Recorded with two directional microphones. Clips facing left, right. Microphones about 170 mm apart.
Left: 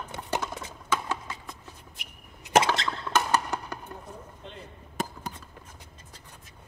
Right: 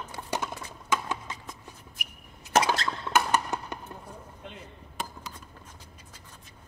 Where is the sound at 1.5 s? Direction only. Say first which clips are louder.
Even; 25° left (ahead or behind).